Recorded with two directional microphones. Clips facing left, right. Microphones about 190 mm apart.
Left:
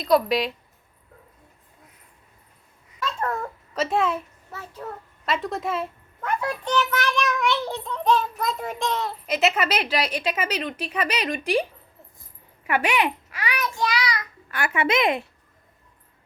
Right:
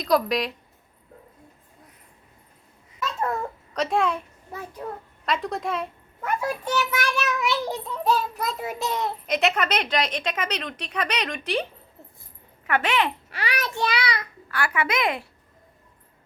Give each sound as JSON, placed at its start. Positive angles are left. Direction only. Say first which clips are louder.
{"t": 0.0, "sound": "a woman's voice", "louder": "left 2 dB", "side_deg": 0}
{"t": 3.0, "sound": "babbling", "louder": "even", "side_deg": -5}
{"t": 3.8, "sound": "a woman's voice", "louder": "even", "side_deg": 0}
{"t": 4.5, "sound": "a child's voice", "louder": "right 3 dB", "side_deg": -15}
{"t": 5.2, "sound": "a woman's voice", "louder": "even", "side_deg": 0}
{"t": 6.2, "sound": "a child's voice", "louder": "even", "side_deg": -10}
{"t": 9.2, "sound": "a woman's voice", "louder": "left 2 dB", "side_deg": 5}
{"t": 12.6, "sound": "a woman's voice", "louder": "left 1 dB", "side_deg": 10}
{"t": 13.3, "sound": "child singing", "louder": "even", "side_deg": -30}
{"t": 14.5, "sound": "a woman's voice", "louder": "left 3 dB", "side_deg": 25}